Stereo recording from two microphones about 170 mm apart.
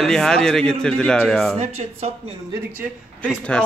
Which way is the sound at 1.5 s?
40° right (ahead or behind).